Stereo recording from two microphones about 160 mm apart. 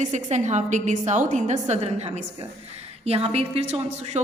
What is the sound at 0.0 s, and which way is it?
A woman's voice, 45° right (ahead or behind).